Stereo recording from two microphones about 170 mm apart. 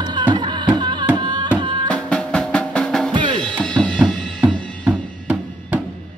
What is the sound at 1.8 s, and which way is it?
Drum, 5° left (ahead or behind).